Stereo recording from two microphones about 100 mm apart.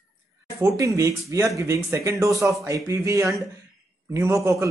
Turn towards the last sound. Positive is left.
turn(degrees=-30)  # may be behind; listen again after turning